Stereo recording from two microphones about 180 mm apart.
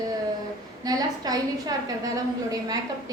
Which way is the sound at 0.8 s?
20° right (ahead or behind).